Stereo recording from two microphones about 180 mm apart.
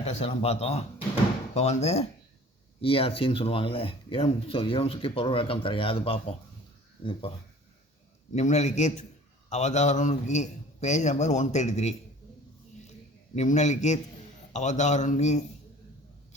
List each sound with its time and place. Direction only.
0.0 s speech: 35° left (ahead or behind)
13.3 s speech: 40° left (ahead or behind)